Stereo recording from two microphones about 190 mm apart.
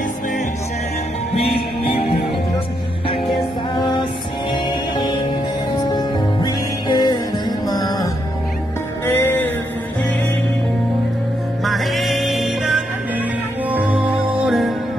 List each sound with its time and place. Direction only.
4.5 s music: 25° left (ahead or behind)
11.6 s music: centre (ahead or behind)